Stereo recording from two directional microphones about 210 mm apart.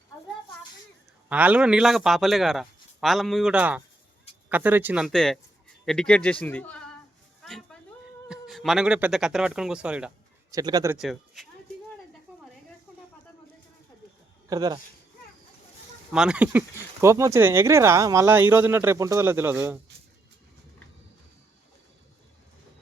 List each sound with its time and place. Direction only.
1.3 s a man's voice: 5° right (ahead or behind)
7.4 s a sound: centre (ahead or behind)
8.3 s speech: centre (ahead or behind)
10.5 s speech: 20° right (ahead or behind)
11.0 s a man's voice: centre (ahead or behind)
14.5 s speech: 20° right (ahead or behind)
16.1 s speech: 5° right (ahead or behind)